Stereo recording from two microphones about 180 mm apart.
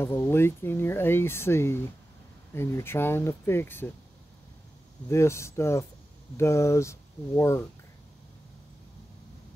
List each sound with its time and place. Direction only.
0.0 s speech: 10° left (ahead or behind)
5.1 s speech: 15° left (ahead or behind)